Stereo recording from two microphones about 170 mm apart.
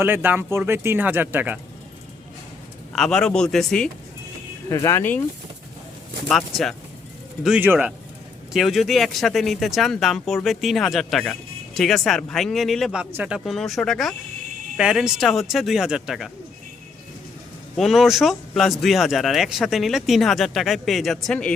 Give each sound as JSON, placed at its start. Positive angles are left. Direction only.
{"t": 0.0, "sound": "speech", "side_deg": -10}
{"t": 2.9, "sound": "speech", "side_deg": 0}
{"t": 4.7, "sound": "speech", "side_deg": 20}
{"t": 7.4, "sound": "speech", "side_deg": -10}
{"t": 17.7, "sound": "speech", "side_deg": 0}